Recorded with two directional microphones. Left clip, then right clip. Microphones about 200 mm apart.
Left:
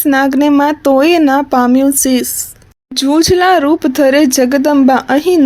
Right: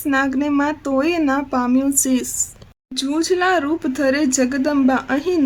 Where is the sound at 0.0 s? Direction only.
35° left (ahead or behind).